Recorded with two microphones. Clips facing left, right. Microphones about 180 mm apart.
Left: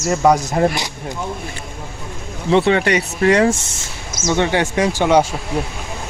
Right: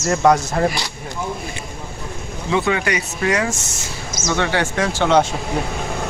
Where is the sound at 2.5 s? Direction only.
30° left (ahead or behind).